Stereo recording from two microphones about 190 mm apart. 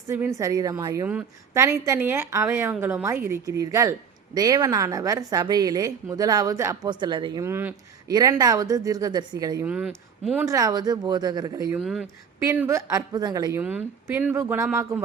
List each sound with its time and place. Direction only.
0.1 s a woman's voice: 15° right (ahead or behind)
7.4 s a woman's voice: 10° right (ahead or behind)
9.6 s speech: 5° right (ahead or behind)
10.4 s a woman's voice: 15° right (ahead or behind)
11.8 s speech: centre (ahead or behind)
12.4 s a woman's voice: 15° right (ahead or behind)